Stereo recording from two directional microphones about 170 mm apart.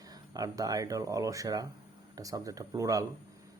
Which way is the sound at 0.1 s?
20° right (ahead or behind).